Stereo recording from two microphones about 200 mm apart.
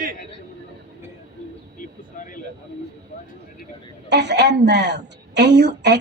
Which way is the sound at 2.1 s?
40° left (ahead or behind).